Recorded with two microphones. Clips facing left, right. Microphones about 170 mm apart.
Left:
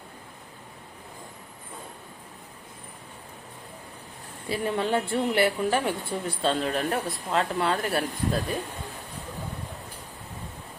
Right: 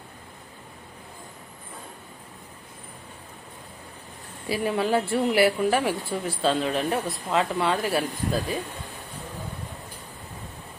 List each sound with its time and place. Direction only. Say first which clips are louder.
4.4 s speech: right 2 dB; 5° right (ahead or behind)